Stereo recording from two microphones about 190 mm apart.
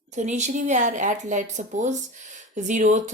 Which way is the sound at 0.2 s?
40° right (ahead or behind).